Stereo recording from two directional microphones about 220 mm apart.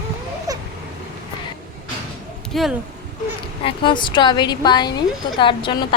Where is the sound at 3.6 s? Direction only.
20° left (ahead or behind).